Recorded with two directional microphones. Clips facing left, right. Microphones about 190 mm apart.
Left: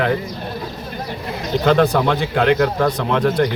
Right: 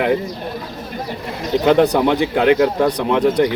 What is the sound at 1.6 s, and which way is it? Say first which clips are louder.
Speech: right 2 dB; 15° right (ahead or behind).